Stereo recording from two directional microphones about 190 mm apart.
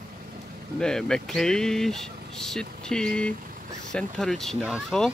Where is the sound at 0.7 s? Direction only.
5° left (ahead or behind).